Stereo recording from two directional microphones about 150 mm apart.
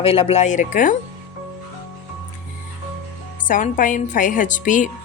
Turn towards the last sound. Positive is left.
turn(degrees=60)  # may be behind; listen again after turning